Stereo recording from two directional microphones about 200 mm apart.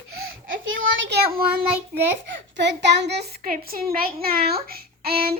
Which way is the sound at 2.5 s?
60° right (ahead or behind).